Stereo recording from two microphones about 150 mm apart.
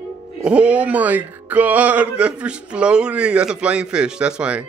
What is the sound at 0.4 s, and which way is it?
Music, 10° right (ahead or behind).